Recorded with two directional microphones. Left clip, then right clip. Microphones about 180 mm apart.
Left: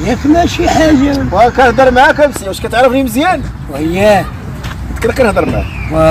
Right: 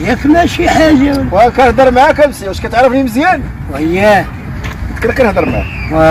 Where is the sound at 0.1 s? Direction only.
5° right (ahead or behind).